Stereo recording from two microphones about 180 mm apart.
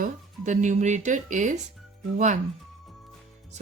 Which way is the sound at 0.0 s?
45° right (ahead or behind).